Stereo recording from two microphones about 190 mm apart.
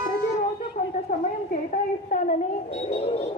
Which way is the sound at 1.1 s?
50° left (ahead or behind).